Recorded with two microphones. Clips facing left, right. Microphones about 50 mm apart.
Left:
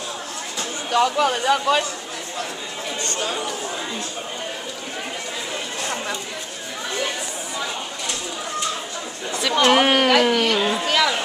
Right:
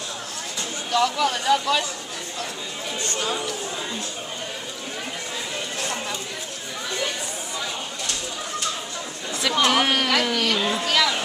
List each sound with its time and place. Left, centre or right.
0.9 s speech: left
9.6 s speech: left
10.6 s a sound: left